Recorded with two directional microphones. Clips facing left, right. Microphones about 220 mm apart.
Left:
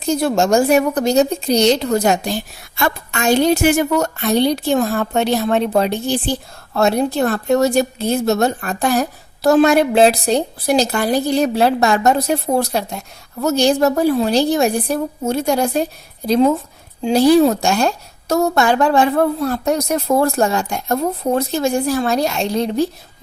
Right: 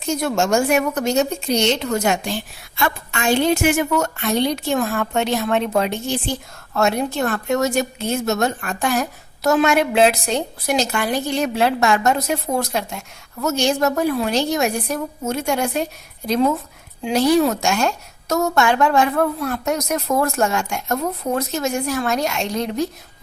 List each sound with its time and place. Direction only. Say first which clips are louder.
0.0 s a woman's voice: left 4 dB; 35° left (ahead or behind)